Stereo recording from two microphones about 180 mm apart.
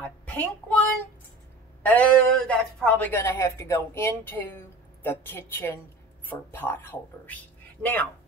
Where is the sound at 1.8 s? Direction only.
10° left (ahead or behind).